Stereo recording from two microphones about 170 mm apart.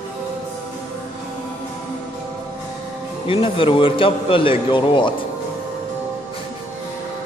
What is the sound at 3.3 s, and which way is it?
A man's voice, 30° left (ahead or behind).